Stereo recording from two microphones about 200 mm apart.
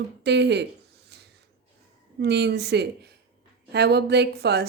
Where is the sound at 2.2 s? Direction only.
55° right (ahead or behind).